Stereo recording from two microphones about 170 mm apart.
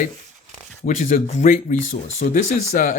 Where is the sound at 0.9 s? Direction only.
45° left (ahead or behind).